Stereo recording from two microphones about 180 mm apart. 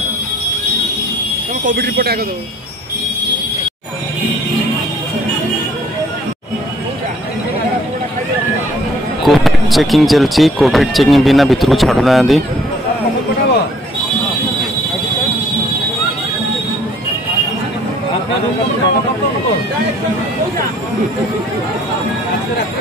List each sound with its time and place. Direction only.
1.7 s speech: 60° right (ahead or behind)
9.2 s speech: centre (ahead or behind)